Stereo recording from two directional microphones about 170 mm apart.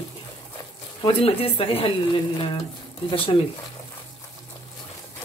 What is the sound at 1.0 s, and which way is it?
Speech, 35° left (ahead or behind).